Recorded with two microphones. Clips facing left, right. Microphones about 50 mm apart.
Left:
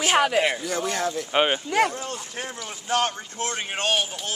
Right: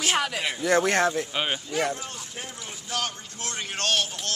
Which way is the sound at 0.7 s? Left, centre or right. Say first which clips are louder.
Right 5 dB; right.